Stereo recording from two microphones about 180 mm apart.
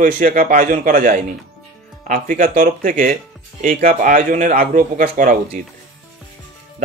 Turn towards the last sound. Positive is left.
turn(degrees=-50)  # may be behind; listen again after turning